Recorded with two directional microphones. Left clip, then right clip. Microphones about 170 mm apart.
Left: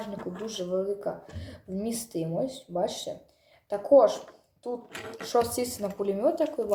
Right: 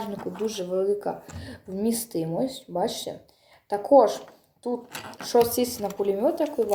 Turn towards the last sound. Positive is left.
turn(degrees=-20)  # may be behind; listen again after turning